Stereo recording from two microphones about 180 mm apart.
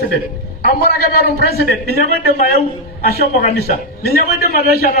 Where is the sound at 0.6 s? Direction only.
55° left (ahead or behind).